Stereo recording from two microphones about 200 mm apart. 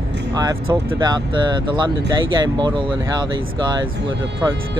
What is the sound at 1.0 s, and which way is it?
Speech, 20° right (ahead or behind).